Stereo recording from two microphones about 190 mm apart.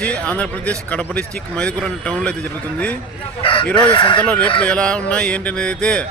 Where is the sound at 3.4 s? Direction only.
25° left (ahead or behind).